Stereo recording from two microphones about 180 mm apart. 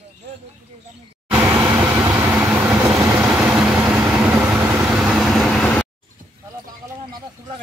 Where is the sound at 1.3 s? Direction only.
20° right (ahead or behind); by 5.8 s 5° left (ahead or behind).